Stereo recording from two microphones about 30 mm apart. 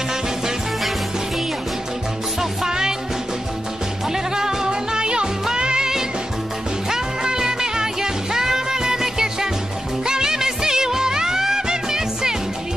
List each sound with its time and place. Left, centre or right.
2.6 s music: centre
4.1 s music: centre
6.9 s music: right